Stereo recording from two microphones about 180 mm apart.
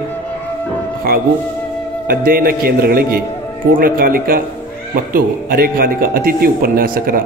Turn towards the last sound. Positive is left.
turn(degrees=-55)  # may be behind; listen again after turning